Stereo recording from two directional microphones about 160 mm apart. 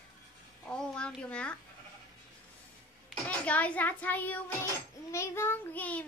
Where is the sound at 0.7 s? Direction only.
5° left (ahead or behind).